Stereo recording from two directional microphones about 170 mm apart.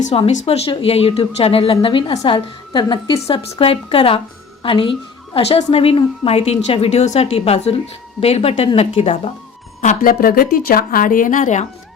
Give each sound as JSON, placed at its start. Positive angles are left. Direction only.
{"t": 0.0, "sound": "a woman's voice", "side_deg": 40}
{"t": 9.8, "sound": "speech", "side_deg": 50}